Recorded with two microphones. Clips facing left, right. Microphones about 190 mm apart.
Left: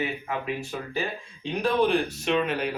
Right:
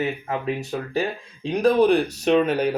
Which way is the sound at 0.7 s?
40° right (ahead or behind).